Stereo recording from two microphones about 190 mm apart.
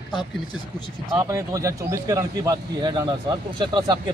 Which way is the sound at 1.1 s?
15° right (ahead or behind).